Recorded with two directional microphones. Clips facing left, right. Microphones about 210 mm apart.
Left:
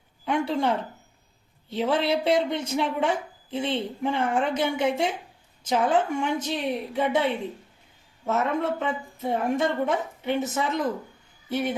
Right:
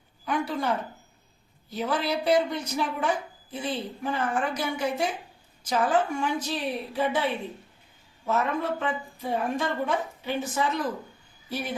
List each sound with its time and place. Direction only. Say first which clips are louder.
0.3 s speech: left 3 dB; 25° left (ahead or behind)